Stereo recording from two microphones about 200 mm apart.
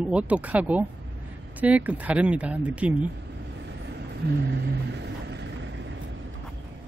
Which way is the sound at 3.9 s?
60° right (ahead or behind).